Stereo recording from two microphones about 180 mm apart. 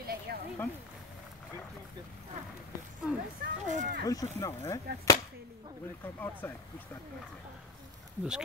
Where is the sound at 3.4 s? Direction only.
40° right (ahead or behind).